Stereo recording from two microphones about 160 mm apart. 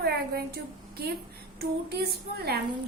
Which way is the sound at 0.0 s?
80° right.